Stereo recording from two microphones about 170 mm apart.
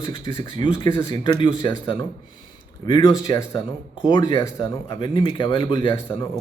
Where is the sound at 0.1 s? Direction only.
30° left (ahead or behind).